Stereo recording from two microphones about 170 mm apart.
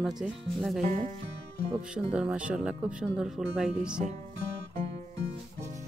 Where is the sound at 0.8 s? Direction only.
45° right (ahead or behind).